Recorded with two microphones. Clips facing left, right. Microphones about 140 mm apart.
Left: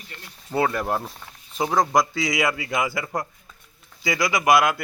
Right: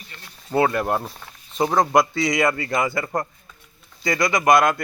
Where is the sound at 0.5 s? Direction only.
Centre (ahead or behind).